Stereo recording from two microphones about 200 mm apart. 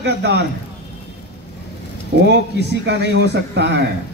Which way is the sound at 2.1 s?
55° right (ahead or behind).